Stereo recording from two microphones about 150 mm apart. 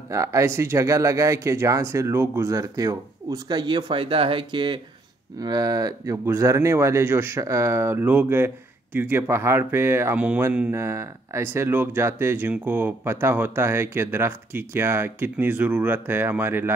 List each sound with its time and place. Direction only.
0.1 s speech: 20° right (ahead or behind)